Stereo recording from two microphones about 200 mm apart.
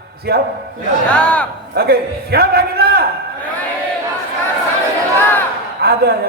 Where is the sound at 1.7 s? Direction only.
50° right (ahead or behind).